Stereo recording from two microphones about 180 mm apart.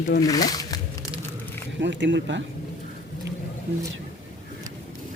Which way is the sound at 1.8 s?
80° right.